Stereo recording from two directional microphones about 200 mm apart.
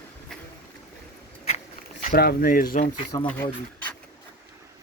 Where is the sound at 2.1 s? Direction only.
50° left (ahead or behind).